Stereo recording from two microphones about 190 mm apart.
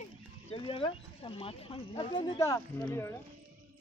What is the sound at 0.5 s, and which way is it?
Speech, 30° left (ahead or behind).